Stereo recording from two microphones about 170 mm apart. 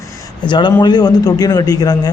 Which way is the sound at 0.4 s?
25° left (ahead or behind).